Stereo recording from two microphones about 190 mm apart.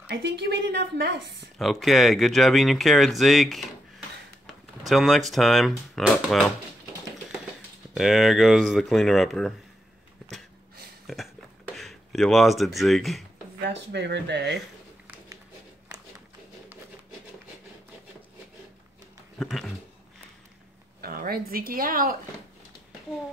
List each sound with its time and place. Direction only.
0.1 s a woman's voice: 65° right (ahead or behind)
1.6 s speech: centre (ahead or behind)
7.9 s speech: centre (ahead or behind)
11.1 s a sound: centre (ahead or behind)
13.6 s a woman's voice: 65° right (ahead or behind)
19.3 s speech: centre (ahead or behind)
21.0 s speech: 50° right (ahead or behind)